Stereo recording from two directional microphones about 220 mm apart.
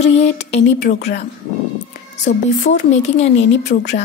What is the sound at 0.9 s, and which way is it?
Speech, 35° left (ahead or behind).